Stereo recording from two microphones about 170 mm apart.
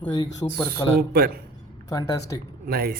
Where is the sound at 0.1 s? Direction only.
20° left (ahead or behind).